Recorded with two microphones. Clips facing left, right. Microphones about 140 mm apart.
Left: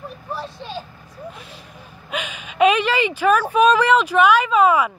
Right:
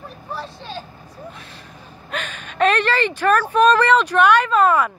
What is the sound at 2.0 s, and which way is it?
Speech, 5° left (ahead or behind).